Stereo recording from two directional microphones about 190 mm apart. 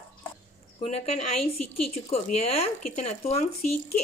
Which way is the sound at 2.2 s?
35° left (ahead or behind).